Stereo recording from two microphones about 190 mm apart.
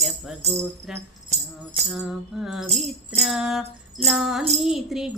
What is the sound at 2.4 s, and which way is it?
Music, centre (ahead or behind).